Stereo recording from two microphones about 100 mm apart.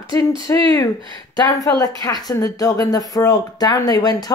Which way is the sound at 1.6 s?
35° left (ahead or behind).